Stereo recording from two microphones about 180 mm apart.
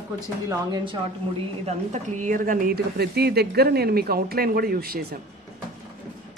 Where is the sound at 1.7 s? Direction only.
40° right (ahead or behind); by 5.0 s 55° right (ahead or behind).